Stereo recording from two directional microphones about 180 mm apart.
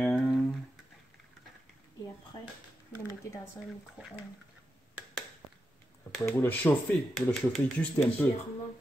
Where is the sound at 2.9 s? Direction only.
15° left (ahead or behind).